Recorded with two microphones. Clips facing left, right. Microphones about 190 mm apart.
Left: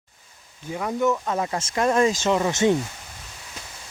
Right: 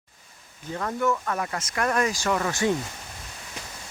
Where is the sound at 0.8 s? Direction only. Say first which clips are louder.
Left 3 dB; 15° left (ahead or behind).